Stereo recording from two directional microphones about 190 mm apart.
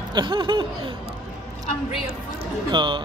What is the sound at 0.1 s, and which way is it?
Speech, 25° right (ahead or behind).